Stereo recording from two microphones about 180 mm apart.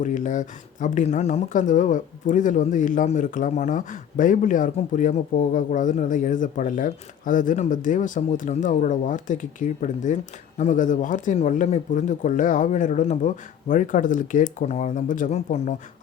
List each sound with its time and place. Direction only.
0.0 s speech: 45° left (ahead or behind)